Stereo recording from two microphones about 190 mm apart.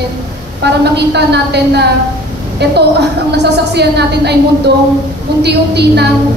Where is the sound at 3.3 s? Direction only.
60° right (ahead or behind).